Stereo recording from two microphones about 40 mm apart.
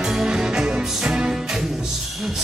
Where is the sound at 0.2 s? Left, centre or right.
Centre.